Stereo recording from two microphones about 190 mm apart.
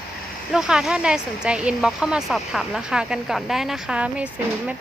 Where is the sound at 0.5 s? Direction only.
5° right (ahead or behind).